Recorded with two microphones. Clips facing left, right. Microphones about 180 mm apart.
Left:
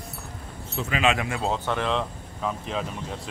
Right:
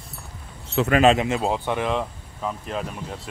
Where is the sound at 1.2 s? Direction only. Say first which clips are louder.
Right 4 dB; 20° right (ahead or behind).